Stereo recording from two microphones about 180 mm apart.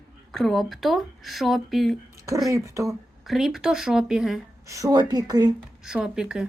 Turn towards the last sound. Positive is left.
turn(degrees=-5)  # may be behind; listen again after turning